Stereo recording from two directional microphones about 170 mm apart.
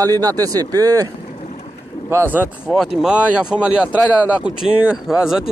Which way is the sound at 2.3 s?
10° right (ahead or behind).